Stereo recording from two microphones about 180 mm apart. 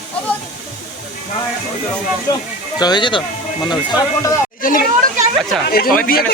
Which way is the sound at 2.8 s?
25° left (ahead or behind).